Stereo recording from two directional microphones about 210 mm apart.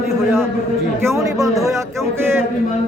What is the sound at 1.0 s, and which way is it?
Speech, 15° right (ahead or behind).